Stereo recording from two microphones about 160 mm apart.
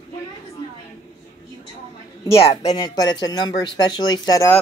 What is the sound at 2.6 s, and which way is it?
Speech, 25° left (ahead or behind).